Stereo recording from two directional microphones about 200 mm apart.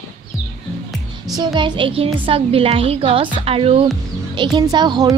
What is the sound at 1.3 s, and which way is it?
Speech, 20° right (ahead or behind).